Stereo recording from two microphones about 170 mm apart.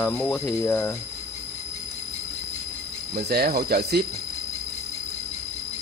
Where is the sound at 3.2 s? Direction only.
65° right (ahead or behind).